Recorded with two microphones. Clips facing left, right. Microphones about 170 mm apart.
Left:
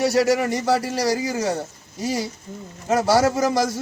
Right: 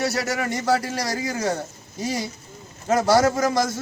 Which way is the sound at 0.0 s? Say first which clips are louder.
Left 6 dB; 10° left (ahead or behind).